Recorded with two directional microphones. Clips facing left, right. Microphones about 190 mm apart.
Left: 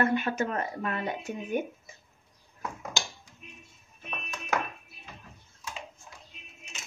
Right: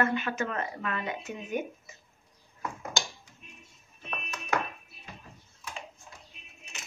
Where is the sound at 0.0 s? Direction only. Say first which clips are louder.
Left 2 dB; 40° left (ahead or behind).